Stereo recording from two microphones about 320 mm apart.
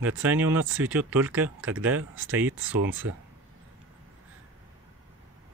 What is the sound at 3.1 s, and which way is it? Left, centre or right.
Speech, right.